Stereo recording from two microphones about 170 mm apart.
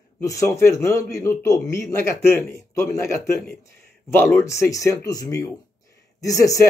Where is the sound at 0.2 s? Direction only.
20° left (ahead or behind).